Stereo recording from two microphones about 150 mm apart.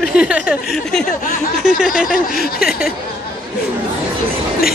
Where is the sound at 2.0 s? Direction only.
70° left (ahead or behind).